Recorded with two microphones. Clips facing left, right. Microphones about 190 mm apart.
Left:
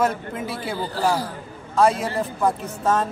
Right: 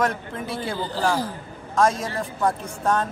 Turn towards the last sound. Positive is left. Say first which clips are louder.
# left 1 dB
turn(degrees=0)  # may be behind; listen again after turning